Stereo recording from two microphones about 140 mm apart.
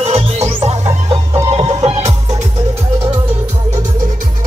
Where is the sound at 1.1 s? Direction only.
20° right (ahead or behind).